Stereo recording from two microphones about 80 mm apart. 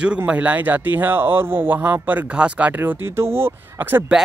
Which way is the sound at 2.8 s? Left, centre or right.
Right.